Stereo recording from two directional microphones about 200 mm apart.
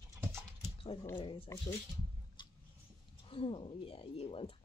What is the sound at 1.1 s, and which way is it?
Speech, 25° left (ahead or behind).